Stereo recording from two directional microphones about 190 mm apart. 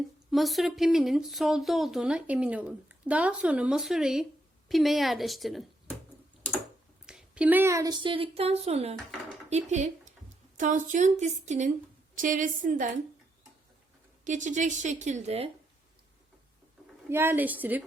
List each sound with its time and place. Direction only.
0.3 s speech: centre (ahead or behind)
7.0 s a woman's voice: 5° right (ahead or behind); by 12.9 s 45° right (ahead or behind)
14.3 s a woman's voice: 40° right (ahead or behind)
17.1 s a woman's voice: 10° right (ahead or behind)